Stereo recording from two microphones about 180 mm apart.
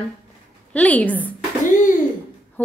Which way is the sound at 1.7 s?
45° left (ahead or behind).